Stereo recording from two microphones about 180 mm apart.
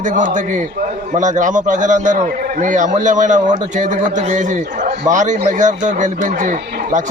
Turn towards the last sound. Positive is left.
turn(degrees=-45)  # may be behind; listen again after turning